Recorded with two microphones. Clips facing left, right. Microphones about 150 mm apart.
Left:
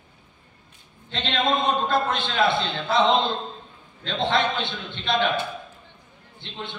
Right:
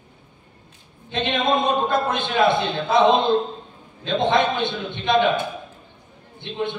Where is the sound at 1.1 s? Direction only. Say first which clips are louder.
Right 3 dB; 15° right (ahead or behind).